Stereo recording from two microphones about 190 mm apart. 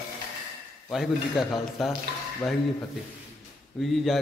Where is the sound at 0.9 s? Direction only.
Centre (ahead or behind).